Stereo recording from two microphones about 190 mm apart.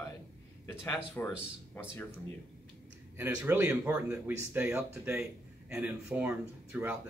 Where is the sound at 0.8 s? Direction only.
10° left (ahead or behind).